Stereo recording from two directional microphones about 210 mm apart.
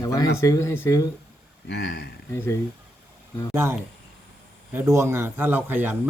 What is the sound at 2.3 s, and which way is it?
Speech, 10° left (ahead or behind).